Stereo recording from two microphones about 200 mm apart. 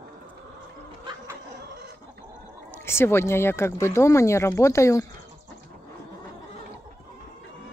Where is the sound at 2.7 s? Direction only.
10° left (ahead or behind).